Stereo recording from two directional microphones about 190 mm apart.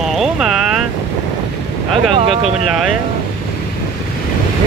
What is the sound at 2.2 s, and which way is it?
Speech, 35° right (ahead or behind).